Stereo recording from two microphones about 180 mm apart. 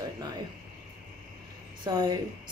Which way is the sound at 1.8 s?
25° right (ahead or behind).